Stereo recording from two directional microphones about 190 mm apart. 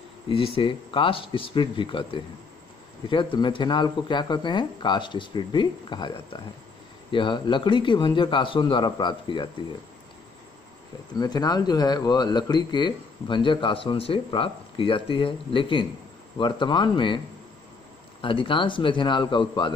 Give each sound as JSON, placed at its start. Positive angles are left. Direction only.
{"t": 0.3, "sound": "speech", "side_deg": 30}
{"t": 11.1, "sound": "speech", "side_deg": 20}
{"t": 18.2, "sound": "speech", "side_deg": 25}